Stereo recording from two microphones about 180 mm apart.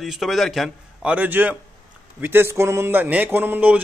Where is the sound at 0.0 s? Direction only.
Centre (ahead or behind).